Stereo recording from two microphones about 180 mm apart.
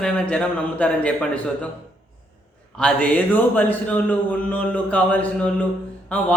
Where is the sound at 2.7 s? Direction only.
5° left (ahead or behind).